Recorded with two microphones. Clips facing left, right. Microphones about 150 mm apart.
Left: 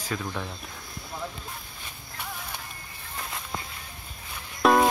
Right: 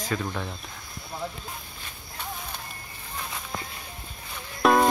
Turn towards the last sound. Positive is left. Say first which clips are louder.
# even
turn(degrees=0)  # may be behind; listen again after turning